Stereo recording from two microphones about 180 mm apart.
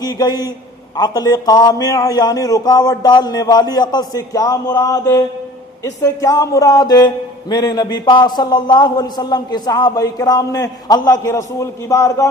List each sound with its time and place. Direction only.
0.0 s a man's voice: 20° left (ahead or behind)